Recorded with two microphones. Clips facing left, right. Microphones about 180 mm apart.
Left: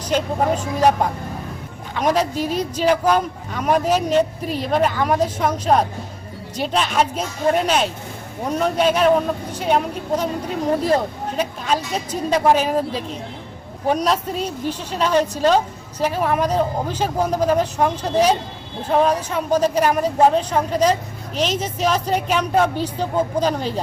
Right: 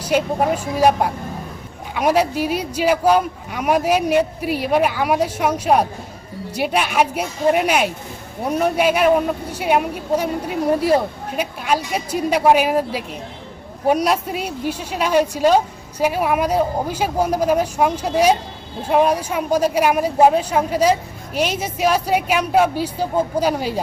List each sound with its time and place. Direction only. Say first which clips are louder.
0.0 s speech: right 2 dB; 10° right (ahead or behind)